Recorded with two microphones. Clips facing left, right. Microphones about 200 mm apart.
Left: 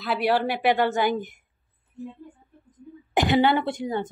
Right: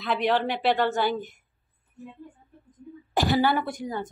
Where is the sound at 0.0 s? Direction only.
5° left (ahead or behind).